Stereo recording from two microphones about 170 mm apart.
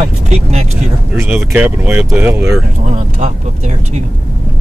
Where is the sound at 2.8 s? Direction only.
45° right (ahead or behind).